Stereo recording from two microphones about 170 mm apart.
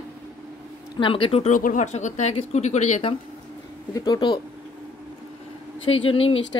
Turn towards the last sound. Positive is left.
turn(degrees=35)  # may be behind; listen again after turning